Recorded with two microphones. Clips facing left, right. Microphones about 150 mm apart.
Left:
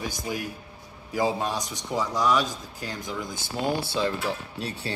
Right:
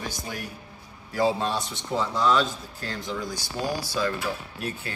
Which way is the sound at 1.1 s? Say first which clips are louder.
Right 2 dB; 15° left (ahead or behind).